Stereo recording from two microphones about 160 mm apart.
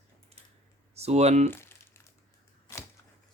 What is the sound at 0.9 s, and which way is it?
Speech, 40° right (ahead or behind).